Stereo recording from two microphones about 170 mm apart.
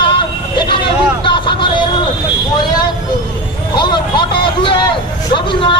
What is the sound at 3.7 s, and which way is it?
Vehicle, 25° left (ahead or behind).